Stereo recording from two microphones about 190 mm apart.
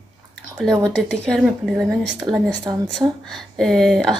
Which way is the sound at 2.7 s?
15° right (ahead or behind).